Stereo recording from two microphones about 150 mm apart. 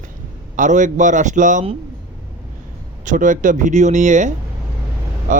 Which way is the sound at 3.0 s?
60° right (ahead or behind).